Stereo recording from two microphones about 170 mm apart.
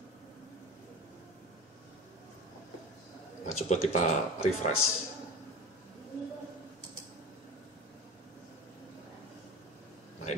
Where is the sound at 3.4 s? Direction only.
40° left (ahead or behind).